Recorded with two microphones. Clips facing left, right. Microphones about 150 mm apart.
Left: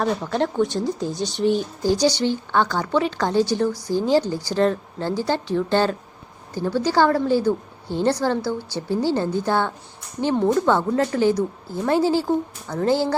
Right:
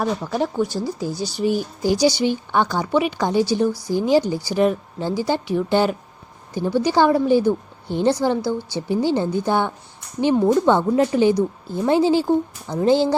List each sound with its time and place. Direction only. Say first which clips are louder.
0.0 s a woman's voice: even; 5° right (ahead or behind)